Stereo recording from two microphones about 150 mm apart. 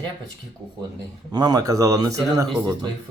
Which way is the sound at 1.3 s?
25° right (ahead or behind).